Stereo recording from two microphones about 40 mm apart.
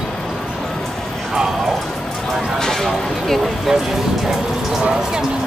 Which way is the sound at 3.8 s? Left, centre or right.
Centre.